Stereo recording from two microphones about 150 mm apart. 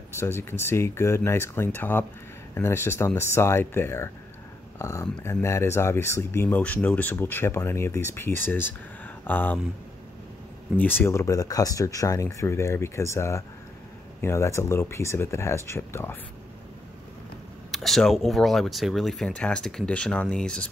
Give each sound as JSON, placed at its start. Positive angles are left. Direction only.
{"t": 0.1, "sound": "speech", "side_deg": 15}
{"t": 10.8, "sound": "speech", "side_deg": 15}
{"t": 17.6, "sound": "speech", "side_deg": 0}